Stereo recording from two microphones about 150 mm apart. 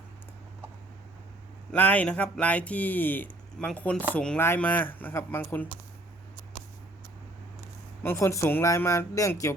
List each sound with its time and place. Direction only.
1.7 s speech: 10° left (ahead or behind)
8.0 s speech: 15° left (ahead or behind)